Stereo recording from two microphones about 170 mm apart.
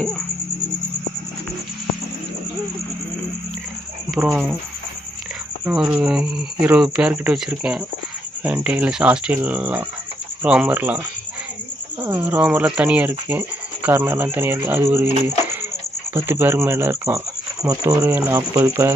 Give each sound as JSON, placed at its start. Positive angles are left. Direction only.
{"t": 5.7, "sound": "speech", "side_deg": -10}
{"t": 12.0, "sound": "speech", "side_deg": -10}